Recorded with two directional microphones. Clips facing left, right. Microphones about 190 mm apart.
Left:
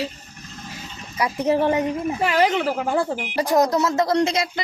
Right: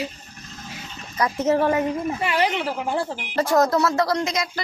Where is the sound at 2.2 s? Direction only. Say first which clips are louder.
Left 5 dB; 45° left (ahead or behind).